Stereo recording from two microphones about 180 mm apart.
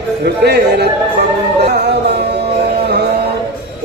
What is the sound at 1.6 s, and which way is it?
Music, 65° right (ahead or behind).